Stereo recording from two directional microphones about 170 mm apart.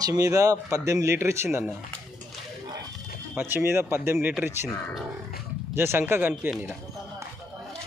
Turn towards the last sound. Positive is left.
turn(degrees=-10)  # may be behind; listen again after turning